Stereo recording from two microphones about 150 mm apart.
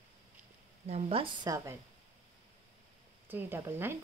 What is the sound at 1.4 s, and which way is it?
Speech, 20° right (ahead or behind).